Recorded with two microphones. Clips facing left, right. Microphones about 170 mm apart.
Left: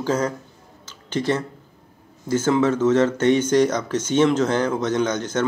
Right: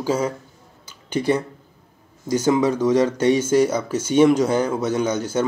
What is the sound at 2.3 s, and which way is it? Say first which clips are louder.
Speech: even; 15° right (ahead or behind).